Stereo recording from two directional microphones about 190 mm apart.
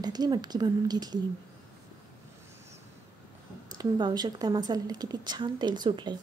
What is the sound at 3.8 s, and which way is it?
A woman's voice, 20° right (ahead or behind).